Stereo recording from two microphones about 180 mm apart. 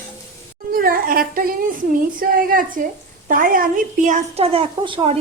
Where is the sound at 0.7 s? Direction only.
55° right (ahead or behind).